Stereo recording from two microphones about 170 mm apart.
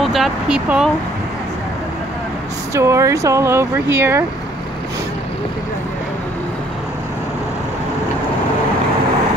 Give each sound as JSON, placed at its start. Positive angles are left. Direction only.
{"t": 0.0, "sound": "speech", "side_deg": 0}
{"t": 2.7, "sound": "speech", "side_deg": -15}